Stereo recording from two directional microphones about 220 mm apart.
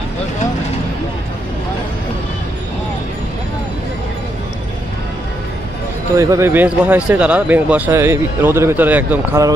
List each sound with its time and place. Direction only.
6.1 s a man's voice: 15° right (ahead or behind)